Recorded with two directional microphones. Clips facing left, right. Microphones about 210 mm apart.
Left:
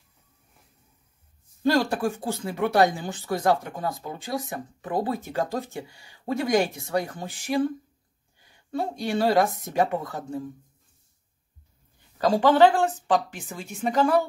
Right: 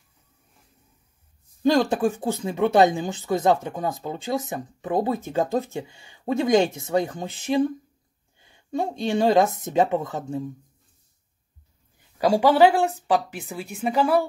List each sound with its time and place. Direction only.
1.6 s speech: 20° right (ahead or behind)
12.2 s speech: 10° right (ahead or behind)